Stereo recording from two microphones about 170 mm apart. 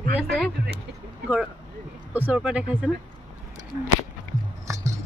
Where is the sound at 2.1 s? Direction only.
10° right (ahead or behind).